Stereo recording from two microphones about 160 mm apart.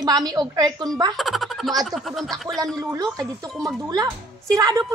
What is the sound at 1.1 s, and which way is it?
Speech, centre (ahead or behind).